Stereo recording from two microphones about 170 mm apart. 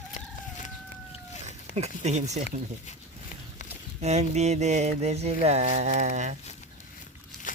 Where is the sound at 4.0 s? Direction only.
40° right (ahead or behind).